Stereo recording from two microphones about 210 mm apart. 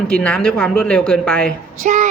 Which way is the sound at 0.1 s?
5° left (ahead or behind).